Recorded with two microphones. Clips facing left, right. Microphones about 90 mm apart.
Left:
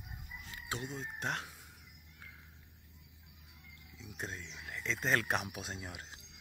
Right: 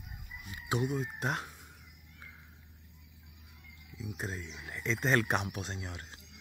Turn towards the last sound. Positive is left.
turn(degrees=10)  # may be behind; listen again after turning